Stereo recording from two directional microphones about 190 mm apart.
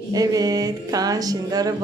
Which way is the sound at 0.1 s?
20° right (ahead or behind).